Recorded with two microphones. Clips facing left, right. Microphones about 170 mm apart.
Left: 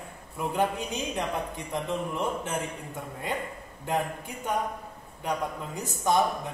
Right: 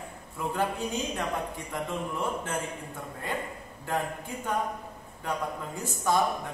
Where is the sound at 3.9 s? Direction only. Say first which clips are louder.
Left 2 dB; 20° left (ahead or behind).